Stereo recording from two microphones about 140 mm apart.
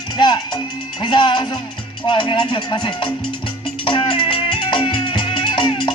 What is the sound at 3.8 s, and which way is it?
Music, 40° left (ahead or behind).